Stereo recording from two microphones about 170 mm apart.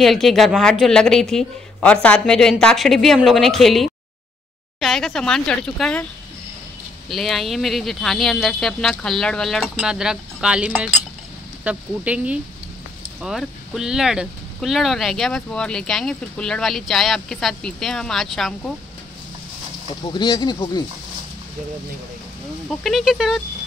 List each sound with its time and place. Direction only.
0.0 s speech: centre (ahead or behind)
7.1 s speech: centre (ahead or behind)
20.0 s speech: 25° left (ahead or behind)
22.7 s speech: centre (ahead or behind)